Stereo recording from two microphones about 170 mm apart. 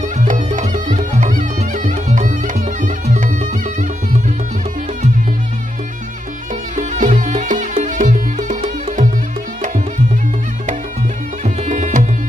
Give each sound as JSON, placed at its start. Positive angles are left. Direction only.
{"t": 0.2, "sound": "music", "side_deg": -50}
{"t": 6.8, "sound": "music", "side_deg": -50}
{"t": 11.4, "sound": "music", "side_deg": -45}